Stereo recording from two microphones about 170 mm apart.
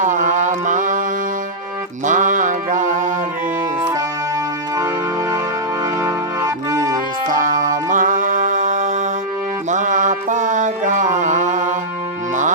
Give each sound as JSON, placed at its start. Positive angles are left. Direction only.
{"t": 0.0, "sound": "mantra", "side_deg": -45}
{"t": 2.0, "sound": "mantra", "side_deg": -50}
{"t": 6.0, "sound": "organ", "side_deg": -20}
{"t": 7.3, "sound": "music", "side_deg": -50}